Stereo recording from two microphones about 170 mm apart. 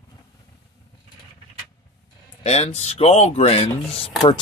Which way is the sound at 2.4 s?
40° left (ahead or behind).